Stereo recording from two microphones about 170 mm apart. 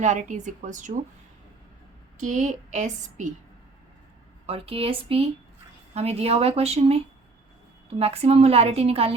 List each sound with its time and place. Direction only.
0.0 s speech: 45° right (ahead or behind)
2.2 s speech: 45° right (ahead or behind)
4.4 s a woman's voice: 35° right (ahead or behind)